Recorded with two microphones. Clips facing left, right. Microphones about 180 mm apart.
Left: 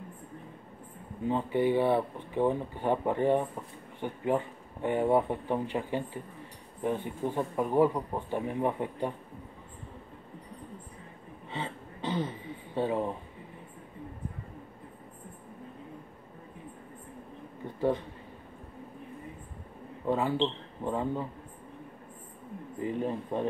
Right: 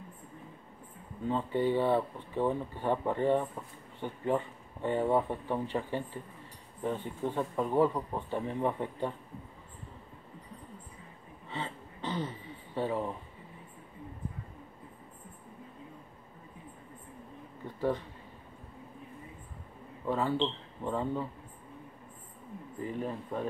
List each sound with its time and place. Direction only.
1.3 s speech: 15° left (ahead or behind)
11.5 s a sound: 15° left (ahead or behind)
17.7 s speech: 20° left (ahead or behind)
20.1 s speech: 15° left (ahead or behind)
22.8 s speech: 20° left (ahead or behind)